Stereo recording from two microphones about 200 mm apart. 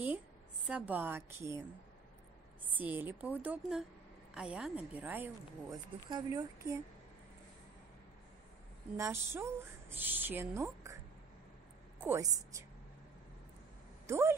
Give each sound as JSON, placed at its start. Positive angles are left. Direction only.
{"t": 0.7, "sound": "speech", "side_deg": -5}
{"t": 2.6, "sound": "speech", "side_deg": -10}
{"t": 6.0, "sound": "speech", "side_deg": -20}
{"t": 8.9, "sound": "speech", "side_deg": -15}
{"t": 12.0, "sound": "speech", "side_deg": -15}
{"t": 14.0, "sound": "speech", "side_deg": -15}